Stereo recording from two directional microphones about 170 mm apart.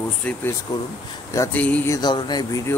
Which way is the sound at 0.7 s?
25° left (ahead or behind).